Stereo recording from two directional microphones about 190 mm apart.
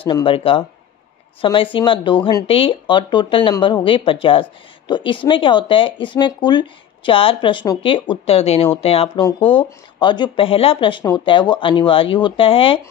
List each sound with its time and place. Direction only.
0.0 s speech: 25° left (ahead or behind)